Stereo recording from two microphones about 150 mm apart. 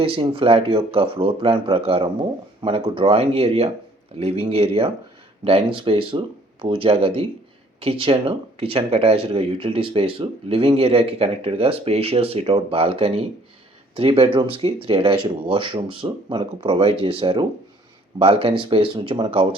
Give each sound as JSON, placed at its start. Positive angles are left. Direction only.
{"t": 0.0, "sound": "speech", "side_deg": -40}